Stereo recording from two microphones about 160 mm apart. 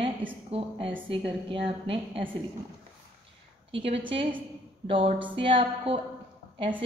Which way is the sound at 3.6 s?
35° right (ahead or behind).